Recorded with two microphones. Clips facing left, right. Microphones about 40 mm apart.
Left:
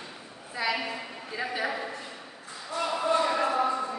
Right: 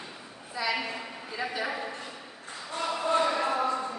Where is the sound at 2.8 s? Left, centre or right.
Centre.